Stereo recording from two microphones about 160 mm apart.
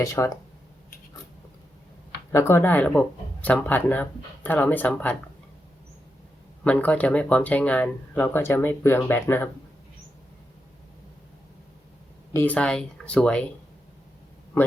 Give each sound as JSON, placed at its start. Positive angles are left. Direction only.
{"t": 0.0, "sound": "speech", "side_deg": 20}
{"t": 2.3, "sound": "speech", "side_deg": 15}
{"t": 6.7, "sound": "speech", "side_deg": 10}
{"t": 12.3, "sound": "speech", "side_deg": 10}